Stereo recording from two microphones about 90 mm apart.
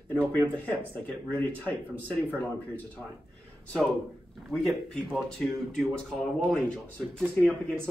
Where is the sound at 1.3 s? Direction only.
15° left (ahead or behind).